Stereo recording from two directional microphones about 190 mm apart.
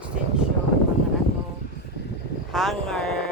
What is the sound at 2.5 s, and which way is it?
Speech, centre (ahead or behind).